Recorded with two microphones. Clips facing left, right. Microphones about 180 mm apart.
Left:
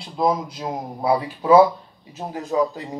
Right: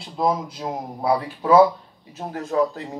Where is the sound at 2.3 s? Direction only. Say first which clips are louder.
Left 1 dB; 15° left (ahead or behind).